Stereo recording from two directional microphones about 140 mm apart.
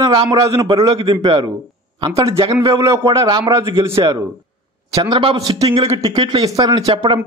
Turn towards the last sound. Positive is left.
turn(degrees=-30)  # may be behind; listen again after turning